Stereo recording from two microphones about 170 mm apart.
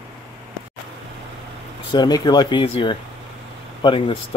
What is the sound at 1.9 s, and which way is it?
Speech, 25° left (ahead or behind).